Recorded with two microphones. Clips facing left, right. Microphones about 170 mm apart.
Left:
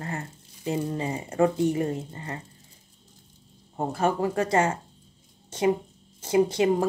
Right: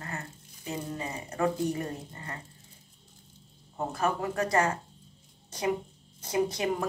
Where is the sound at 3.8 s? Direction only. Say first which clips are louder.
Left 5 dB; 30° left (ahead or behind).